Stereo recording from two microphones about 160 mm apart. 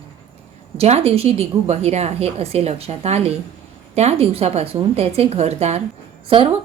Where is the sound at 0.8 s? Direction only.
40° right (ahead or behind).